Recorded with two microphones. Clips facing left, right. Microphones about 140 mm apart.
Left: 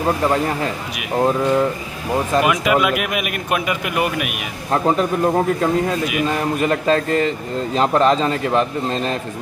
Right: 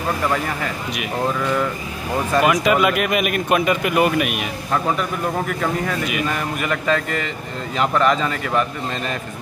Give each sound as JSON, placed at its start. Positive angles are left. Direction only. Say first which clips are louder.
{"t": 0.2, "sound": "a man's voice", "louder": "left 4 dB", "side_deg": 25}
{"t": 2.4, "sound": "speech", "louder": "right 1 dB", "side_deg": 5}
{"t": 4.6, "sound": "a man's voice", "louder": "left 5 dB", "side_deg": 35}